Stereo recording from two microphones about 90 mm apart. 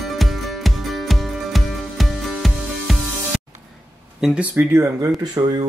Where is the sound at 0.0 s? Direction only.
Centre (ahead or behind).